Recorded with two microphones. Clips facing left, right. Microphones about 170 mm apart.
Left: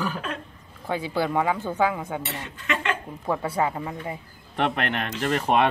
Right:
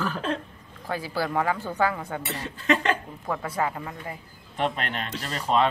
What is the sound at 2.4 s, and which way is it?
Speech, 35° right (ahead or behind).